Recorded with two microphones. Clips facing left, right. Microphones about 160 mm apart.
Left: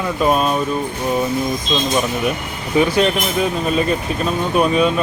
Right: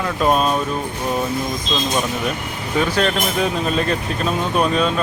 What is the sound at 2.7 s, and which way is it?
Speech, 10° left (ahead or behind).